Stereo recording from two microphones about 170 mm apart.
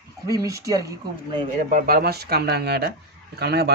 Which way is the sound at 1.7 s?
60° right (ahead or behind).